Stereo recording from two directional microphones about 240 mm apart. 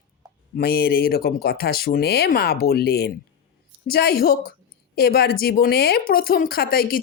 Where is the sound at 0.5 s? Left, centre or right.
Left.